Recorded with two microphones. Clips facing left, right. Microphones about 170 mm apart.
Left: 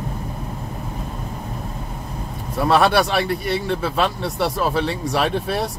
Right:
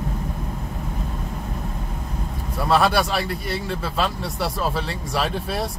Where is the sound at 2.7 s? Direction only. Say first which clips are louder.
Left 2 dB; 60° left (ahead or behind).